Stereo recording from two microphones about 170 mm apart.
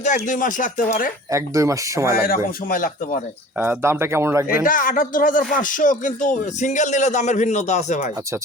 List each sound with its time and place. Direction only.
0.0 s speech: 50° left (ahead or behind)
1.3 s speech: 20° right (ahead or behind)
2.1 s speech: 60° left (ahead or behind)
3.6 s speech: 15° right (ahead or behind)
4.6 s speech: 55° left (ahead or behind)